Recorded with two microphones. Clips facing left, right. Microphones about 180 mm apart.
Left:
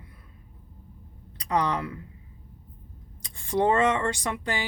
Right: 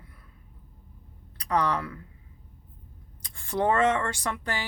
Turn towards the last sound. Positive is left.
turn(degrees=15)  # may be behind; listen again after turning